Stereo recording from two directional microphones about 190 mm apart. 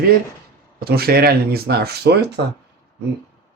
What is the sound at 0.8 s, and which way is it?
Speech, 55° right (ahead or behind).